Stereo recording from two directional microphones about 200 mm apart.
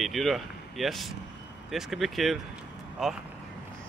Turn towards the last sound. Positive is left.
turn(degrees=0)  # may be behind; listen again after turning